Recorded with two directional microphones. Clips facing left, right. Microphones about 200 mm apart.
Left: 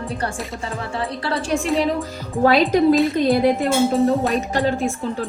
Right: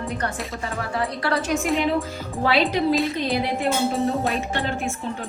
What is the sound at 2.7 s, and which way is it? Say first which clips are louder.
Speech: left 6 dB; 45° left (ahead or behind).